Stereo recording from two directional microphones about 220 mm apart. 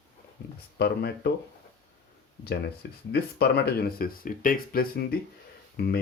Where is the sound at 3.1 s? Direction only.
45° left (ahead or behind).